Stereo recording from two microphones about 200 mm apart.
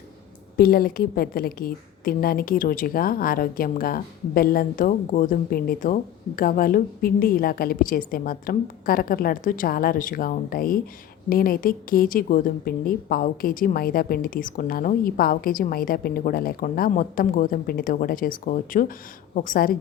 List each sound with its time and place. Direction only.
0.5 s a woman's voice: 50° left (ahead or behind)